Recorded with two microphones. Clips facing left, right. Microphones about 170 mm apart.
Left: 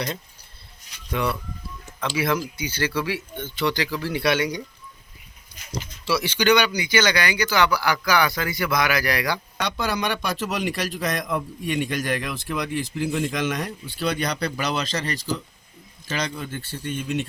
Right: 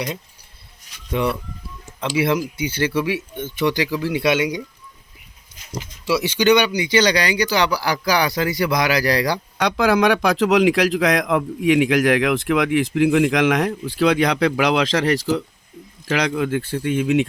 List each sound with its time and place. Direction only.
1.1 s speech: 20° right (ahead or behind)
6.1 s speech: 20° right (ahead or behind); by 9.4 s 35° right (ahead or behind)
9.6 s a man's voice: 90° right